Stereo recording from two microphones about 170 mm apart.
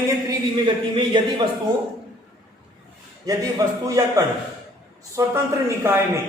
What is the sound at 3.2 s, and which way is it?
A man's voice, 20° right (ahead or behind).